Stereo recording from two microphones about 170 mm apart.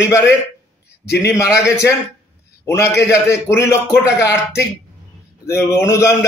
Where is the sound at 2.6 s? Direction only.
15° left (ahead or behind).